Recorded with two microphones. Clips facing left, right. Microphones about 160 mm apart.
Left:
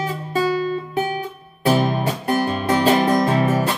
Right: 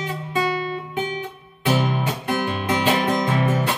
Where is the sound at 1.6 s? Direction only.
40° left (ahead or behind).